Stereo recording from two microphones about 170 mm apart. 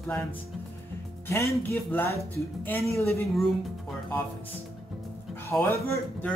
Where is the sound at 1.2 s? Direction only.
15° left (ahead or behind).